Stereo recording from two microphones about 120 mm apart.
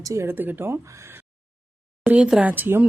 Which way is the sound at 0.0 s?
25° right (ahead or behind).